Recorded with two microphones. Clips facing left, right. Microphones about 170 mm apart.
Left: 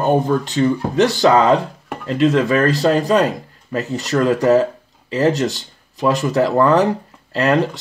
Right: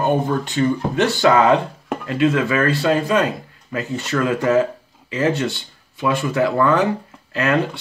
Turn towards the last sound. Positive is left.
turn(degrees=35)  # may be behind; listen again after turning